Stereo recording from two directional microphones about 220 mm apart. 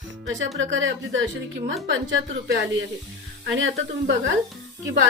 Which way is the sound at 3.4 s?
60° right (ahead or behind).